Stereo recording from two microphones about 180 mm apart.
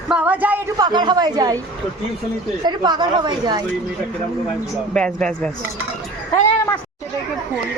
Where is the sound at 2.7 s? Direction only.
25° right (ahead or behind).